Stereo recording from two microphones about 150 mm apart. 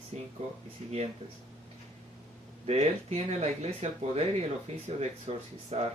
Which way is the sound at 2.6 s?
45° right (ahead or behind).